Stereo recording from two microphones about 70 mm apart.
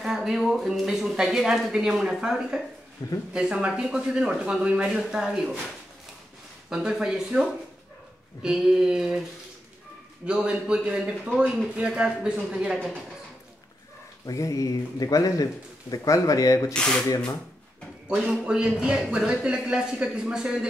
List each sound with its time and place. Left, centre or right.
0.0 s speech: centre
3.0 s speech: left
3.3 s speech: centre
6.7 s speech: centre
10.2 s speech: centre
12.7 s speech: centre
14.2 s speech: left
16.7 s speech: centre
18.0 s speech: centre